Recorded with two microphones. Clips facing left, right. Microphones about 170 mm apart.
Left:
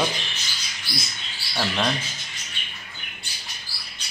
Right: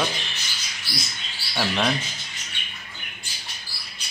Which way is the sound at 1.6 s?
Centre (ahead or behind).